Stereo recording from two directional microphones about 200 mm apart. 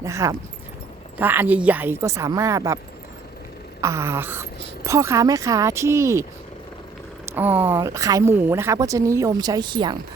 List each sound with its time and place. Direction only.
0.0 s speech: 15° right (ahead or behind)
3.8 s speech: 15° right (ahead or behind)
7.3 s speech: 10° right (ahead or behind)